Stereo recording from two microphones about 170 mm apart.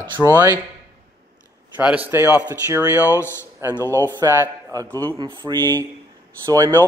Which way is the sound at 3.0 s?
15° left (ahead or behind).